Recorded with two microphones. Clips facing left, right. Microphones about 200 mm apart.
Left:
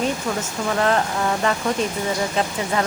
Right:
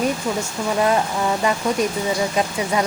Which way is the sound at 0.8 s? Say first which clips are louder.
Right 1 dB; 10° right (ahead or behind).